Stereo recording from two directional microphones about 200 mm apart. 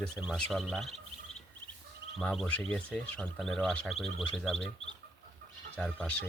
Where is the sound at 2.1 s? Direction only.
Centre (ahead or behind).